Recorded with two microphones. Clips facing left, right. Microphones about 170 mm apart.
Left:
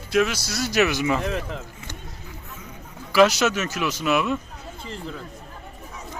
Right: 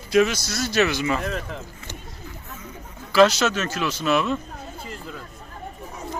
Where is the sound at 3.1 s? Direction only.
10° left (ahead or behind).